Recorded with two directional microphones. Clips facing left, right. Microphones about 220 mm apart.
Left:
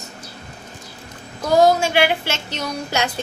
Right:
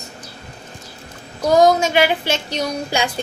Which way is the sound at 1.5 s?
20° right (ahead or behind).